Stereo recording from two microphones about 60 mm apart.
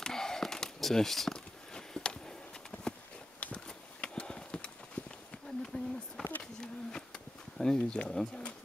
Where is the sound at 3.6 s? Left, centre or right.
Centre.